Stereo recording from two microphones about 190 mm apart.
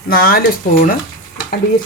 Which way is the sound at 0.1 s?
50° left (ahead or behind).